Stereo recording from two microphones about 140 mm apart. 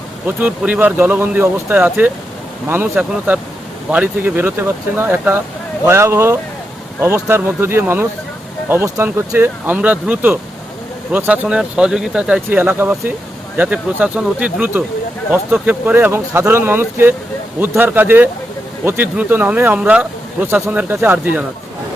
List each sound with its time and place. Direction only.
0.3 s speech: 10° right (ahead or behind)